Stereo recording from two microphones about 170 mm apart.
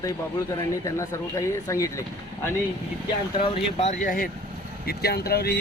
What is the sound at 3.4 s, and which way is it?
Speech, 35° left (ahead or behind).